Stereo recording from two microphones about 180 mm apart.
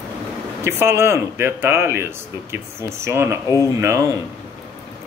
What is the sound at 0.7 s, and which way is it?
Speech, 15° right (ahead or behind).